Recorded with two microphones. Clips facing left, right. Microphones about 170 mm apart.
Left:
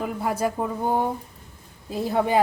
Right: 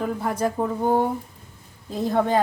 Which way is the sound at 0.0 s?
10° left (ahead or behind).